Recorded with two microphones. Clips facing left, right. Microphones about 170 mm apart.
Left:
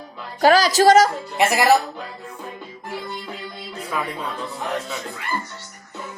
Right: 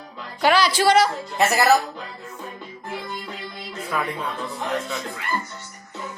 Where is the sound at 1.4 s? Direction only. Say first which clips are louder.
Left 1 dB; 10° left (ahead or behind).